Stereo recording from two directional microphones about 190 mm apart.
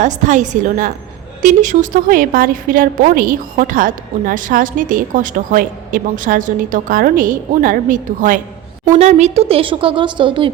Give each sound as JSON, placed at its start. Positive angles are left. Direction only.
{"t": 0.0, "sound": "a woman's voice", "side_deg": -40}